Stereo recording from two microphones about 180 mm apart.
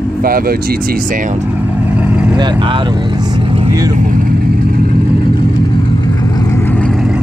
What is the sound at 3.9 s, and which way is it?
Vehicle, 50° right (ahead or behind).